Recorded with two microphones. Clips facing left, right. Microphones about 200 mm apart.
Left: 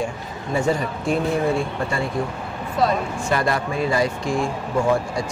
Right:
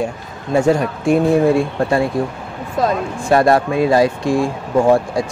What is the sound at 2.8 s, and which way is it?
Speech, 55° right (ahead or behind).